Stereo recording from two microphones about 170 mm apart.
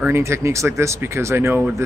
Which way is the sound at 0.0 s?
15° right (ahead or behind).